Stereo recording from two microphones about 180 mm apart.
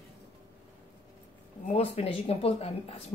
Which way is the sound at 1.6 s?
35° left (ahead or behind).